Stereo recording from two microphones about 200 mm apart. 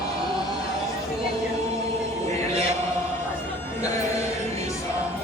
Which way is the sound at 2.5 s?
30° right (ahead or behind).